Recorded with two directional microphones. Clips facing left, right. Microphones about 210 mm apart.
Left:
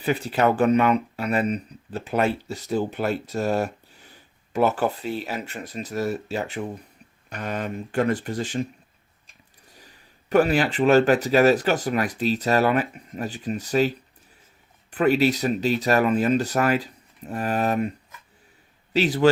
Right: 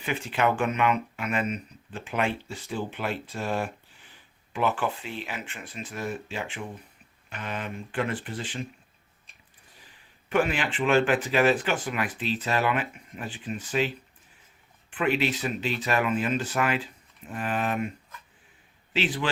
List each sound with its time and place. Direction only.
0.0 s speech: 35° left (ahead or behind)
10.2 s speech: 40° left (ahead or behind)
18.9 s speech: 40° left (ahead or behind)